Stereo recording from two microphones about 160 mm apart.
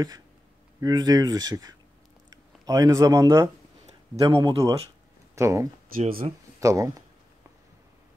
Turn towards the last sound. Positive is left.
turn(degrees=-20)  # may be behind; listen again after turning